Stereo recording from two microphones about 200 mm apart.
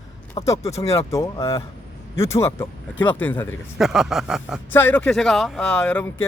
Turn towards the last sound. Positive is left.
turn(degrees=5)  # may be behind; listen again after turning